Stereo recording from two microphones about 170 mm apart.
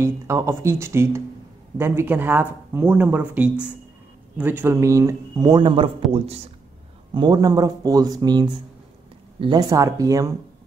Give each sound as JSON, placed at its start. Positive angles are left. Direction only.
{"t": 0.0, "sound": "speech", "side_deg": -15}
{"t": 7.2, "sound": "speech", "side_deg": -25}